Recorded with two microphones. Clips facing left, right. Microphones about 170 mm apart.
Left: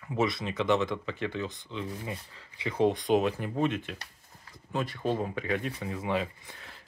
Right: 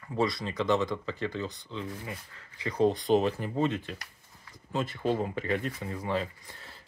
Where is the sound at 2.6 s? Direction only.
10° left (ahead or behind).